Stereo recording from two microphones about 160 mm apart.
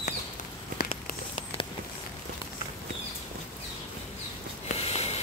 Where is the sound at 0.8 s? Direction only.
35° left (ahead or behind).